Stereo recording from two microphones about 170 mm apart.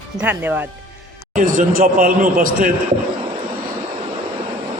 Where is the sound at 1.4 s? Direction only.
50° right (ahead or behind).